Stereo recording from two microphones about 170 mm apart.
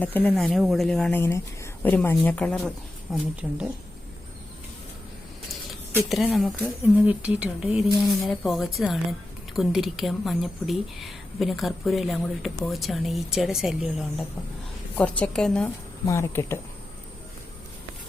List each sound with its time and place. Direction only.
0.0 s speech: 10° left (ahead or behind)
6.3 s a woman's voice: 5° right (ahead or behind)
16.0 s speech: 15° left (ahead or behind)